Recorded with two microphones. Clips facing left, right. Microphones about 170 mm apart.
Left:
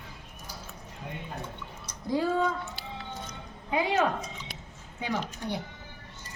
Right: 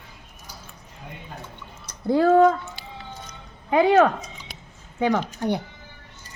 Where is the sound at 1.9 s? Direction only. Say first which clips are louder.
Right 10 dB; 60° right (ahead or behind).